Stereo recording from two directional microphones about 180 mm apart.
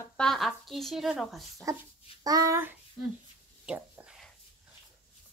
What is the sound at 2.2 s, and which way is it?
Speech, 20° right (ahead or behind).